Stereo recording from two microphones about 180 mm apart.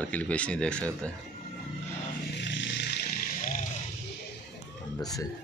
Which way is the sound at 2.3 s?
85° left.